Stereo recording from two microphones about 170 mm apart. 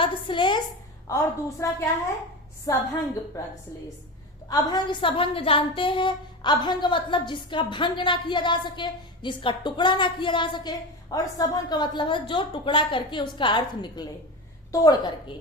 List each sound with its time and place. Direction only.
0.0 s a sound: 30° left (ahead or behind)
1.0 s a woman's voice: 20° left (ahead or behind)
4.4 s a woman's voice: 25° left (ahead or behind)